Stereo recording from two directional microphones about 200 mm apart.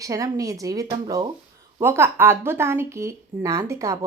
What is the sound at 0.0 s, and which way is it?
A woman's voice, 15° right (ahead or behind).